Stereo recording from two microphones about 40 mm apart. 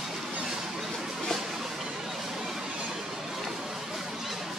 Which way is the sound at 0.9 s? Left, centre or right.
Centre.